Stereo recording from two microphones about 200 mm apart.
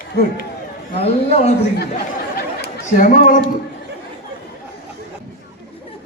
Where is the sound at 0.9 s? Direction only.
30° left (ahead or behind).